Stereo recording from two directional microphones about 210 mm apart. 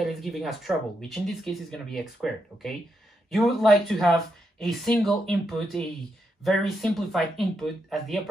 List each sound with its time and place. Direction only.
0.0 s speech: centre (ahead or behind)